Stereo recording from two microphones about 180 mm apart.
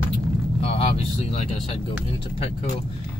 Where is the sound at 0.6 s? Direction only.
30° left (ahead or behind).